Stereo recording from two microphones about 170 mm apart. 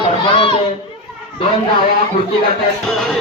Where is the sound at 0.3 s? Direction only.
30° left (ahead or behind).